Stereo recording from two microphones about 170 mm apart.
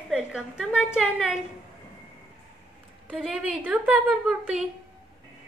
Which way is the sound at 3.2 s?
10° right (ahead or behind).